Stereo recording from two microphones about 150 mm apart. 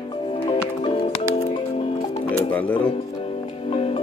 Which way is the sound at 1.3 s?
45° left (ahead or behind).